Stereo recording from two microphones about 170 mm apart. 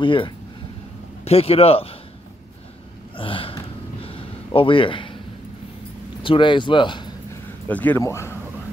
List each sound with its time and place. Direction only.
0.0 s a man's voice: 30° left (ahead or behind)
3.2 s gasp: 30° left (ahead or behind)
4.0 s a sound: 30° left (ahead or behind)
6.2 s speech: 30° left (ahead or behind)
7.6 s speech: 10° left (ahead or behind)